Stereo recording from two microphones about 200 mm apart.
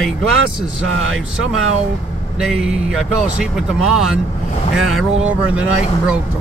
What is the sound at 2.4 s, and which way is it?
Speech, centre (ahead or behind).